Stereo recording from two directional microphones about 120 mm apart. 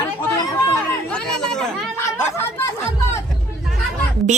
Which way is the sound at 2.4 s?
20° left (ahead or behind).